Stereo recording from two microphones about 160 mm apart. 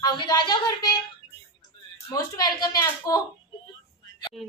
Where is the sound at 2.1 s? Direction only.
25° left (ahead or behind).